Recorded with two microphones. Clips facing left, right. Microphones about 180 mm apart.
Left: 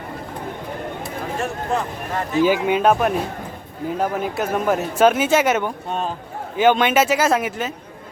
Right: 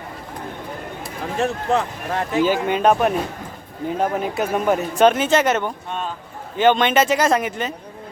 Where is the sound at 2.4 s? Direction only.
10° left (ahead or behind).